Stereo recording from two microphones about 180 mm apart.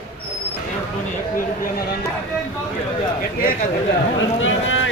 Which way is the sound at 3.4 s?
50° left (ahead or behind).